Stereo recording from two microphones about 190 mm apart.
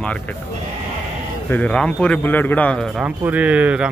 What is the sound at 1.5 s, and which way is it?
A man's voice, 5° left (ahead or behind).